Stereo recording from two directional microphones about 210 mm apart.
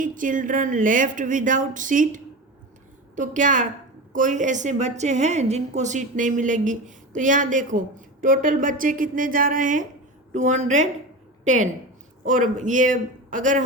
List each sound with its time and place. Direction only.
0.0 s a woman's voice: 40° right (ahead or behind)